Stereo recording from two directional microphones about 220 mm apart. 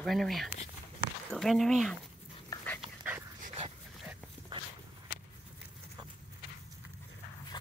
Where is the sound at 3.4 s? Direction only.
25° right (ahead or behind).